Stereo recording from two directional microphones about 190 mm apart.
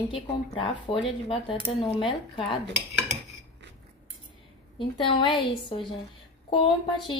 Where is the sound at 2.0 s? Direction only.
25° left (ahead or behind).